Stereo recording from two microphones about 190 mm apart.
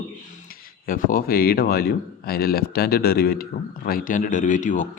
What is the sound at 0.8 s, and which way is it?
A man's voice, 45° left (ahead or behind).